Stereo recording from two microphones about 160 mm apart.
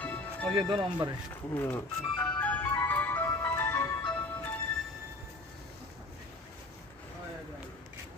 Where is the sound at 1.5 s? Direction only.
10° left (ahead or behind).